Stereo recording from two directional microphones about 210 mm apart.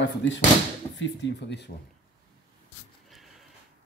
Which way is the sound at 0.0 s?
60° left (ahead or behind).